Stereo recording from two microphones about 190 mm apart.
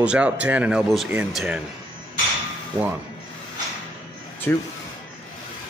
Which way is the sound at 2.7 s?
20° right (ahead or behind).